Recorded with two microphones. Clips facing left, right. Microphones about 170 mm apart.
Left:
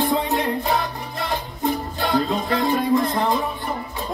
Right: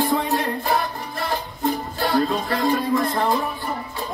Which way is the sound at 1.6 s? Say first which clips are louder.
Even; 20° left (ahead or behind).